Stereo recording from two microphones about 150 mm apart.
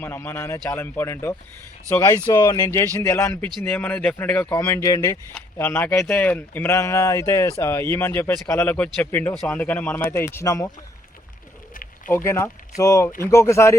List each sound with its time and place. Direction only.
0.0 s speech: 15° left (ahead or behind)
4.5 s speech: 20° left (ahead or behind)
12.0 s speech: 15° left (ahead or behind)